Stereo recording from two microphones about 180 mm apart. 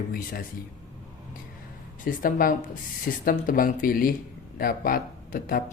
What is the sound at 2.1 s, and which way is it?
Speech, 50° left (ahead or behind).